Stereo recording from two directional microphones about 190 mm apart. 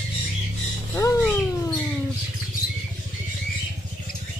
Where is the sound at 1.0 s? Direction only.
15° left (ahead or behind).